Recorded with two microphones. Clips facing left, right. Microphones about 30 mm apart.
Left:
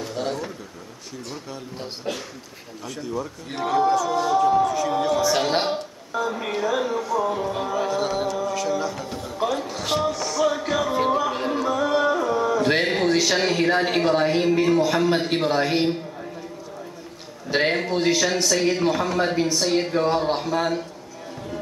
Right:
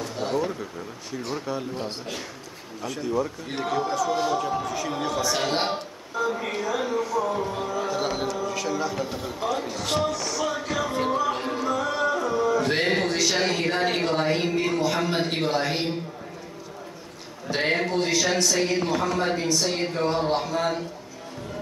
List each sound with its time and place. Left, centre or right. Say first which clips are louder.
0.0 s a sound: right 1 dB; centre
1.1 s speech: right 6 dB; centre
7.9 s speech: left 3 dB; centre
9.8 s speech: left 2 dB; centre
10.6 s music: left 4 dB; centre
12.8 s a sound: left 2 dB; centre
13.1 s speech: left 3 dB; centre
17.5 s speech: left 2 dB; centre
18.2 s speech: left 2 dB; centre